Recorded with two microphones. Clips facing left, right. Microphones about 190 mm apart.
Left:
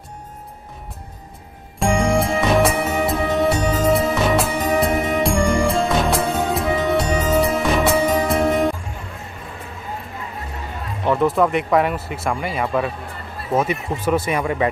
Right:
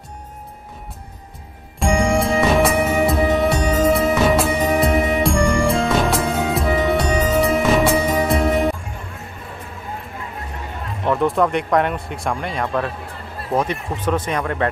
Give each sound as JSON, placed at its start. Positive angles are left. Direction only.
{"t": 1.8, "sound": "music", "side_deg": 0}
{"t": 11.1, "sound": "speech", "side_deg": 0}